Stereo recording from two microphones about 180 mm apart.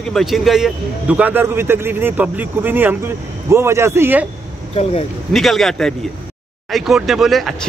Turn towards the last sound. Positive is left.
turn(degrees=0)  # may be behind; listen again after turning